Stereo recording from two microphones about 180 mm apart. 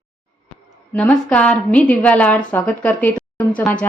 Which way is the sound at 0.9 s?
5° left (ahead or behind).